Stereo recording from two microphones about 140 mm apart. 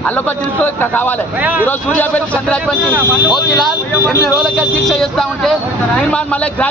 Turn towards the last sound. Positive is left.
turn(degrees=10)  # may be behind; listen again after turning